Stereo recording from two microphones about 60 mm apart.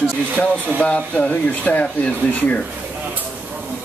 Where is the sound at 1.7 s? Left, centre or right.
Left.